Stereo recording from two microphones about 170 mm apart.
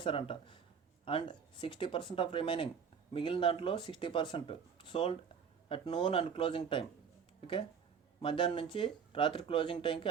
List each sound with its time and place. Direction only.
0.0 s speech: 30° left (ahead or behind)
8.2 s speech: 30° left (ahead or behind)